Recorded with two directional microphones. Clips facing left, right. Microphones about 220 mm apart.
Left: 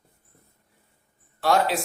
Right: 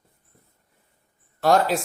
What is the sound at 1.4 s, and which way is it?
Speech, 45° right (ahead or behind).